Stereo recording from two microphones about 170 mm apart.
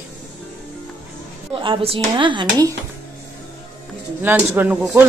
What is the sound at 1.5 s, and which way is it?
Speech, 30° right (ahead or behind).